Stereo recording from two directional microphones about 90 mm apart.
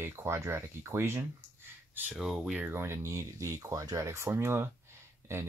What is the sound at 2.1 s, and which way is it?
Speech, 5° right (ahead or behind).